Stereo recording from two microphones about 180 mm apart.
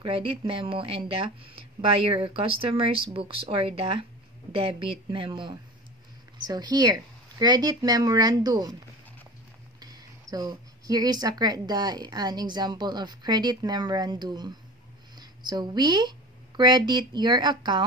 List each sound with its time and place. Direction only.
0.0 s a woman's voice: 30° right (ahead or behind)